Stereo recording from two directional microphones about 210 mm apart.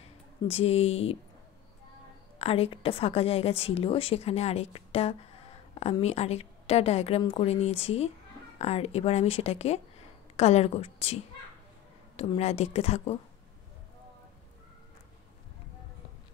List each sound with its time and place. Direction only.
0.5 s a woman's voice: 30° left (ahead or behind)
2.3 s a woman's voice: 30° left (ahead or behind)
12.2 s a woman's voice: 30° left (ahead or behind)